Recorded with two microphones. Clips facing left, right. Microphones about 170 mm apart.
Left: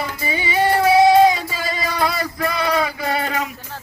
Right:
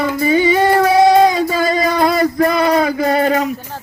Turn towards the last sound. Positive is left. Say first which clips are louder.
# right 8 dB
turn(degrees=-40)  # may be behind; listen again after turning